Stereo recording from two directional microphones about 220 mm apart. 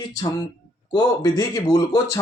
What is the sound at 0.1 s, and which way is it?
Speech, 20° left (ahead or behind).